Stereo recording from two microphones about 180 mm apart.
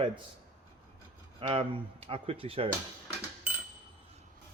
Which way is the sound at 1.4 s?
35° right (ahead or behind).